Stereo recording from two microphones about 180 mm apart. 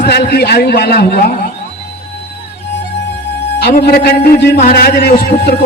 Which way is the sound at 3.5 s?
65° left (ahead or behind).